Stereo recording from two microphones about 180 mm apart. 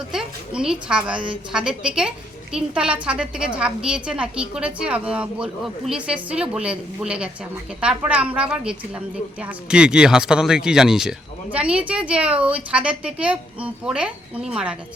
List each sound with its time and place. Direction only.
0.1 s a woman's voice: 5° right (ahead or behind)